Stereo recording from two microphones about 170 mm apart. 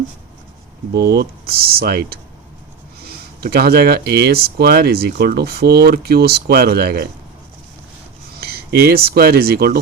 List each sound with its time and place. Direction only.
0.9 s speech: 70° right (ahead or behind)
3.4 s speech: 70° right (ahead or behind)
8.4 s speech: 65° right (ahead or behind)